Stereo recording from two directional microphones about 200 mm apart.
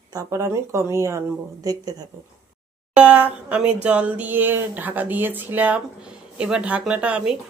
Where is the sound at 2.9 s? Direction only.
5° right (ahead or behind).